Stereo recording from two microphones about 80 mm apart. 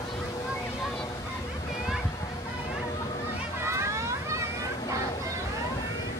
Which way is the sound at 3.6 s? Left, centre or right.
Right.